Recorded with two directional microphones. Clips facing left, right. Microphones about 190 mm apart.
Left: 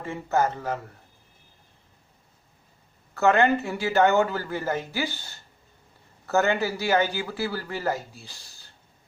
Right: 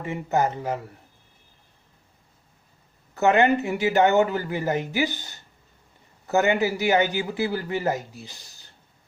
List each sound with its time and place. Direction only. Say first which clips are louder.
0.0 s speech: right 1 dB; 15° right (ahead or behind)
3.2 s a man's voice: right 1 dB; 20° right (ahead or behind)